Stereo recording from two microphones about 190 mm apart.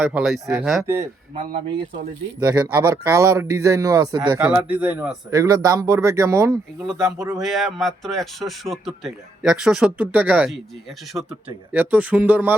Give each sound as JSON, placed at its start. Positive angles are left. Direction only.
{"t": 0.0, "sound": "speech", "side_deg": -5}
{"t": 2.4, "sound": "a man's voice", "side_deg": -20}
{"t": 7.4, "sound": "a man's voice", "side_deg": 0}